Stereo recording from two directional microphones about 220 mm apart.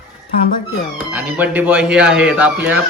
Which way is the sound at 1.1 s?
10° right (ahead or behind).